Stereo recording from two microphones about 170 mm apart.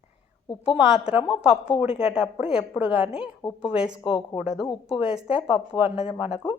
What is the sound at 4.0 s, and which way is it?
Speech, 30° left (ahead or behind).